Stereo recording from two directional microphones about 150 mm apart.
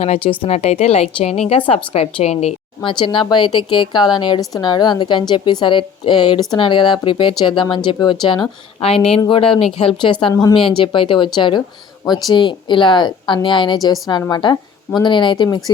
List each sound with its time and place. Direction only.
0.0 s a woman's voice: 40° left (ahead or behind)
2.8 s a woman's voice: 35° left (ahead or behind)